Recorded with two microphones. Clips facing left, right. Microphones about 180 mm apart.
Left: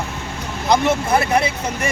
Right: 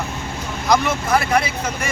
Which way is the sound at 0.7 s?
25° left (ahead or behind).